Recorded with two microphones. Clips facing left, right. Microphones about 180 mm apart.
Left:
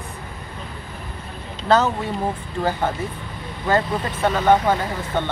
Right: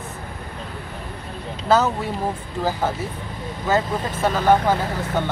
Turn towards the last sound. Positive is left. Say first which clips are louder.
# right 1 dB
turn(degrees=-5)  # may be behind; listen again after turning